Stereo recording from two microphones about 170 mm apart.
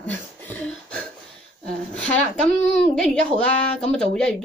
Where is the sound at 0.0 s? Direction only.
10° left (ahead or behind).